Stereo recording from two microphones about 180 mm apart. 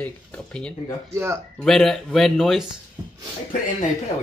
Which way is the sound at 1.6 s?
Centre (ahead or behind).